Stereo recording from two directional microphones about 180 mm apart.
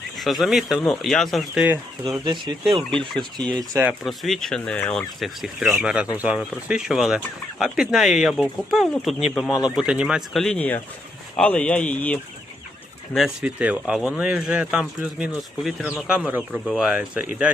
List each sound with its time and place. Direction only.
0.2 s speech: centre (ahead or behind)
1.6 s speech: 15° right (ahead or behind)
2.2 s speech: 25° right (ahead or behind)
3.4 s speech: 5° left (ahead or behind)
3.7 s speech: 15° right (ahead or behind)
4.0 s speech: centre (ahead or behind)
9.5 s speech: 20° left (ahead or behind)
9.7 s speech: 5° right (ahead or behind)
13.1 s speech: 5° right (ahead or behind)